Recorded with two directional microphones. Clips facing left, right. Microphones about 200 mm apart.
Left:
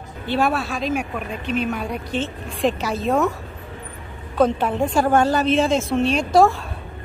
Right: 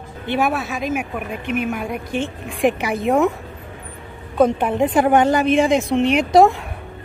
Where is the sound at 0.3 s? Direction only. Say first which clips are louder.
Right 1 dB; 15° right (ahead or behind).